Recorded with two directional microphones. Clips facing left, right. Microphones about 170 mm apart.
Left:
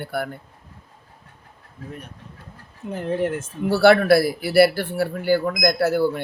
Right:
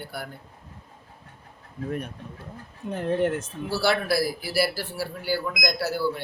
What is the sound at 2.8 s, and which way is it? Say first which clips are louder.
Speech: left 1 dB; centre (ahead or behind).